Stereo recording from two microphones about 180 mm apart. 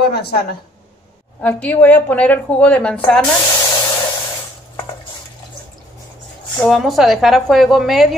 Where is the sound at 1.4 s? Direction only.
10° left (ahead or behind).